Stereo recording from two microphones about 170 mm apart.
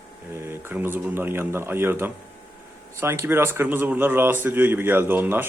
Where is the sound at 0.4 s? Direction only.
15° right (ahead or behind).